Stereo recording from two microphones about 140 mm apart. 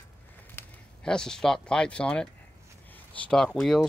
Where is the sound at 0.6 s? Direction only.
15° left (ahead or behind).